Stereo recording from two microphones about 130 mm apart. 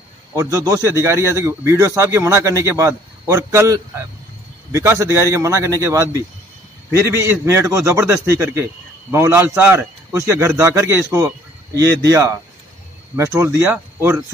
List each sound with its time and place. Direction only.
0.4 s a man's voice: 25° right (ahead or behind)